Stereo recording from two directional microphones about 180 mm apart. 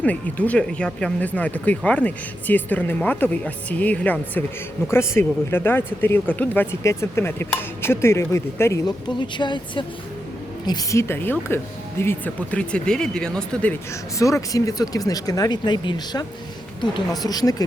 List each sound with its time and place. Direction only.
0.0 s speech: 10° left (ahead or behind)
14.2 s speech: 15° left (ahead or behind)
17.2 s speech: 20° left (ahead or behind)